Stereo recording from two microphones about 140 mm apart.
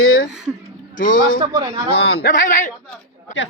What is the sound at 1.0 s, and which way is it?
A man's voice, 75° left (ahead or behind).